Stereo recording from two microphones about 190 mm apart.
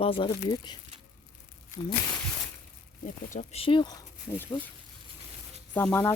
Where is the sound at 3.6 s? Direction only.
25° left (ahead or behind).